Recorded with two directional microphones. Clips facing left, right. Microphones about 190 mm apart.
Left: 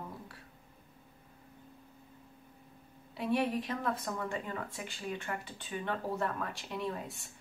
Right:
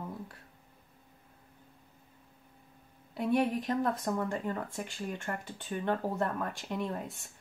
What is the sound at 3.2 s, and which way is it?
Speech, 45° right (ahead or behind).